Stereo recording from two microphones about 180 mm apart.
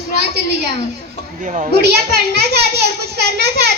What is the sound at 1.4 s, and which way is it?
Speech, 45° right (ahead or behind).